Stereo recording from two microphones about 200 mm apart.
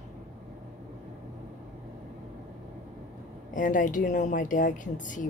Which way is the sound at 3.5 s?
40° left (ahead or behind).